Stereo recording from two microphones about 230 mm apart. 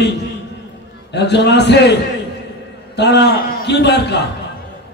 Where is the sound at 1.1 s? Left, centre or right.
Left.